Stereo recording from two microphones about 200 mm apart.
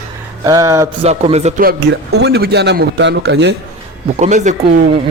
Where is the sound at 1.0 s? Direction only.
35° right (ahead or behind).